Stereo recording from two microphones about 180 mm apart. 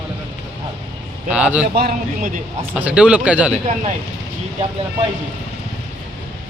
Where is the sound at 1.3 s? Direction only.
5° right (ahead or behind).